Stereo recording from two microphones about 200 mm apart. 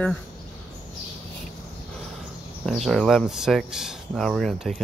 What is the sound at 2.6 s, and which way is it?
Speech, centre (ahead or behind).